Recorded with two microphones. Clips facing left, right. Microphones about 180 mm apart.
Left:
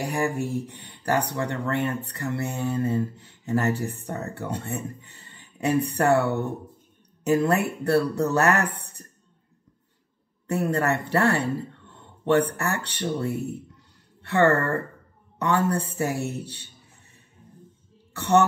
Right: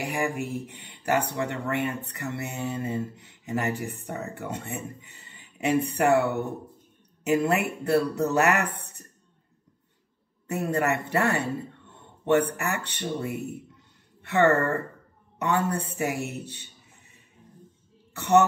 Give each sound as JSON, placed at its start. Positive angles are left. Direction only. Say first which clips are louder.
{"t": 0.1, "sound": "speech", "louder": "left 3 dB", "side_deg": -15}
{"t": 10.5, "sound": "speech", "louder": "left 2 dB", "side_deg": -20}
{"t": 18.1, "sound": "speech", "louder": "even", "side_deg": -20}